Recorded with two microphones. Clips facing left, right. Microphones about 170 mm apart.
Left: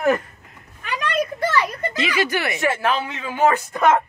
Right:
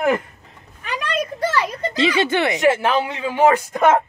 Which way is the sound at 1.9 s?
30° right (ahead or behind).